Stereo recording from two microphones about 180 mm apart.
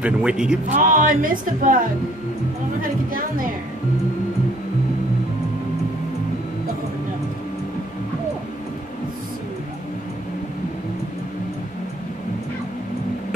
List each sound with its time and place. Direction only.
0.0 s speech: 5° right (ahead or behind)
0.7 s speech: 45° right (ahead or behind)
2.8 s speech: 50° right (ahead or behind)